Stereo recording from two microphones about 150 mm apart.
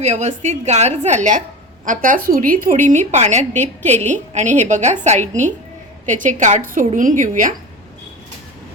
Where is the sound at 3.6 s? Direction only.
15° left (ahead or behind).